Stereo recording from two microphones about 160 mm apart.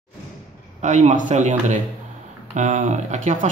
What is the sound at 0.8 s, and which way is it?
Speech, 50° right (ahead or behind).